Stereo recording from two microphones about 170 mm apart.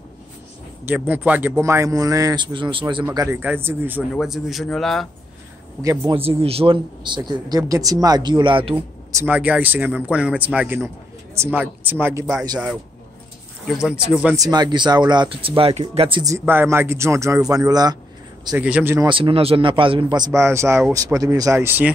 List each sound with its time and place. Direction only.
0.8 s a man's voice: 10° right (ahead or behind); by 3.1 s 30° right (ahead or behind)
3.2 s speech: 15° right (ahead or behind)
4.1 s a man's voice: centre (ahead or behind)
5.8 s a man's voice: 20° right (ahead or behind)
6.1 s a man's voice: 35° right (ahead or behind)
8.7 s speech: 10° right (ahead or behind)
13.7 s a man's voice: 5° right (ahead or behind)
14.3 s a man's voice: 20° right (ahead or behind)
16.3 s speech: 15° right (ahead or behind)
18.6 s speech: 5° right (ahead or behind)
18.9 s a man's voice: 30° right (ahead or behind); by 21.9 s 10° right (ahead or behind)